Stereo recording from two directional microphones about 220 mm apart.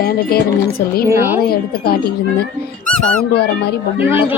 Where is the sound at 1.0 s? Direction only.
10° right (ahead or behind).